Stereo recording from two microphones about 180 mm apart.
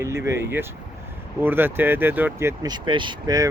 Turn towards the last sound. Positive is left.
turn(degrees=-25)  # may be behind; listen again after turning